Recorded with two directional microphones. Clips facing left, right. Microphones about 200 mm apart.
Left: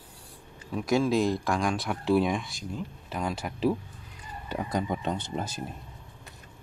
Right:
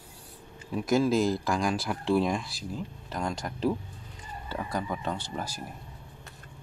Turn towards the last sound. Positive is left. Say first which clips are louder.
# left 2 dB
turn(degrees=20)  # may be behind; listen again after turning